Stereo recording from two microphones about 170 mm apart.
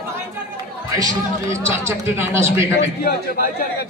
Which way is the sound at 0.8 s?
20° right (ahead or behind).